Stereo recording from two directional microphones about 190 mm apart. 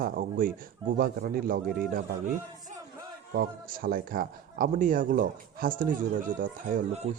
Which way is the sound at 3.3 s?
50° right (ahead or behind).